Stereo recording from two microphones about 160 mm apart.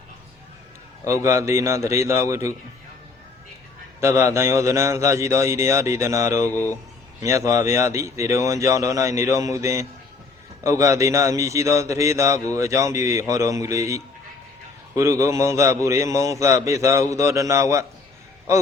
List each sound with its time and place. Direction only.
1.0 s a man's voice: 20° right (ahead or behind)
4.0 s speech: 15° right (ahead or behind)
6.5 s speech: 10° left (ahead or behind)
7.2 s speech: 20° right (ahead or behind)